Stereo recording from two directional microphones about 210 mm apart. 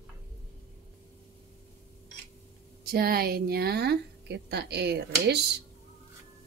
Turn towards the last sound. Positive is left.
turn(degrees=-55)  # may be behind; listen again after turning